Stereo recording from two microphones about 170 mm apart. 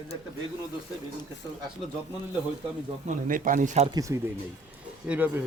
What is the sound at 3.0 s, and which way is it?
Speech, 50° right (ahead or behind).